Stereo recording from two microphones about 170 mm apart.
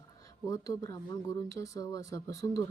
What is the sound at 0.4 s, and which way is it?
Speech, 20° left (ahead or behind).